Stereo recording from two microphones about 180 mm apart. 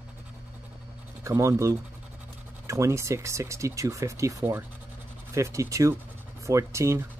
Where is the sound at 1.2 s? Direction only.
15° right (ahead or behind).